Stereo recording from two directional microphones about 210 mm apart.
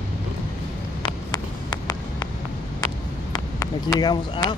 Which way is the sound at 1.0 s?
20° left (ahead or behind).